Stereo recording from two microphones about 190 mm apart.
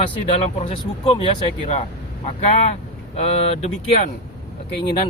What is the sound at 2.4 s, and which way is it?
Speech, 35° left (ahead or behind).